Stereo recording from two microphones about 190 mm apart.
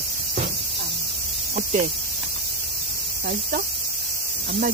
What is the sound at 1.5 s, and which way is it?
Speech, 45° right (ahead or behind).